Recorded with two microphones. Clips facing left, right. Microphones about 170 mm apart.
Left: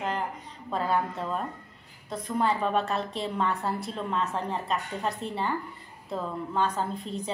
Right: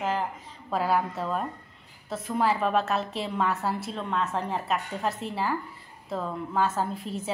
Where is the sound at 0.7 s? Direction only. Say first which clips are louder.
Right 2 dB; 5° right (ahead or behind).